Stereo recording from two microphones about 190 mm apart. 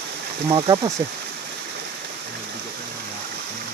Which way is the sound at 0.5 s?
25° right (ahead or behind).